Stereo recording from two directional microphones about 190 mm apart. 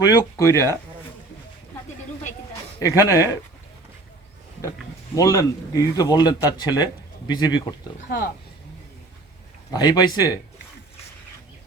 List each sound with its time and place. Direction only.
0.0 s speech: 15° left (ahead or behind)
2.8 s speech: 15° left (ahead or behind)
5.1 s speech: 15° left (ahead or behind)
8.1 s speech: 55° left (ahead or behind)
9.7 s speech: 20° left (ahead or behind)